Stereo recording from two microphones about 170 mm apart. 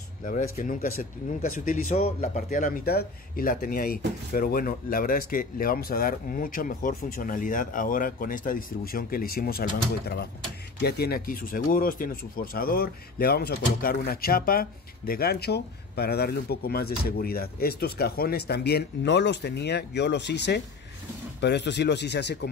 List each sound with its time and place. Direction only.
0.2 s speech: 50° left (ahead or behind); by 22.5 s 80° left